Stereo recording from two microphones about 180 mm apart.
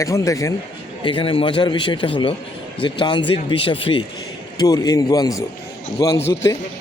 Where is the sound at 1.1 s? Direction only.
30° left (ahead or behind).